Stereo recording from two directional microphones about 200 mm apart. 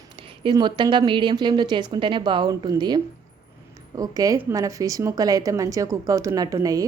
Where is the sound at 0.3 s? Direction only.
25° right (ahead or behind).